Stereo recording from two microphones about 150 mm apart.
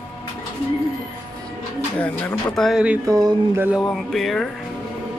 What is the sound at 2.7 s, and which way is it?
Music, 5° right (ahead or behind).